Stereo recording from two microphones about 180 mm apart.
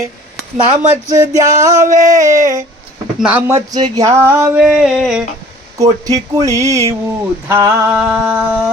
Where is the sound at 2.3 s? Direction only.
45° right (ahead or behind).